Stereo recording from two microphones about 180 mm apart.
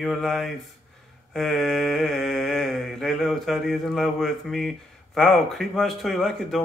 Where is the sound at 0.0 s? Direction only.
Centre (ahead or behind).